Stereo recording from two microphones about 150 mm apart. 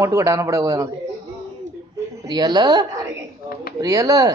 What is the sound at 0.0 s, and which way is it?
Speech, 20° right (ahead or behind).